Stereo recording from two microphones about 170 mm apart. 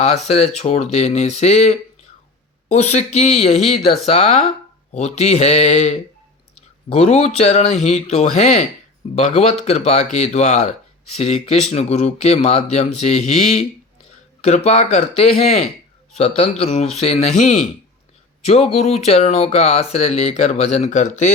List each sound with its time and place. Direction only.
0.0 s speech: 40° left (ahead or behind)